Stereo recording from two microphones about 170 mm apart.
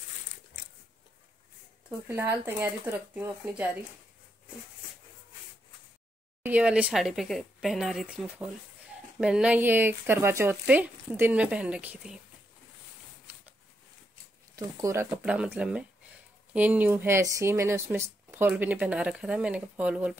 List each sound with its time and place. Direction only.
1.9 s speech: 15° right (ahead or behind)
6.4 s speech: 10° right (ahead or behind)
14.5 s speech: 20° right (ahead or behind)
15.2 s speech: 5° right (ahead or behind)